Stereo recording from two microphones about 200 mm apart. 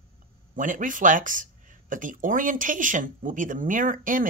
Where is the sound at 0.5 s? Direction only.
40° right (ahead or behind).